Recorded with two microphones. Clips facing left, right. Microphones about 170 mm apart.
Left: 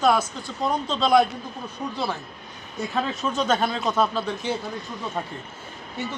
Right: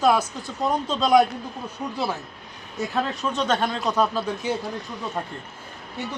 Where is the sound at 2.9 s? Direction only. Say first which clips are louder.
Even; 5° left (ahead or behind).